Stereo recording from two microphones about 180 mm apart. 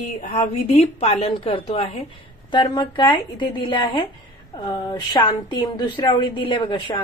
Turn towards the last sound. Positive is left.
turn(degrees=25)  # may be behind; listen again after turning